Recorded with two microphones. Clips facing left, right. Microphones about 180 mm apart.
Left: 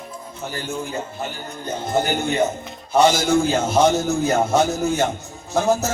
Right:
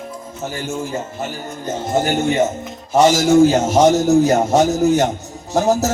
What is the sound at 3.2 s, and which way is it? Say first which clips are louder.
Music: right 7 dB; 40° right (ahead or behind).